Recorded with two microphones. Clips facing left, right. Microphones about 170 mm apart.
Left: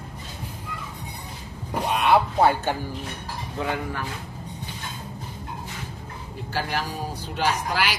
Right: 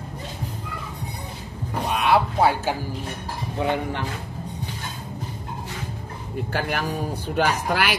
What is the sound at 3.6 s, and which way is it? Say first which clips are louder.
Speech: right 4 dB; 20° right (ahead or behind).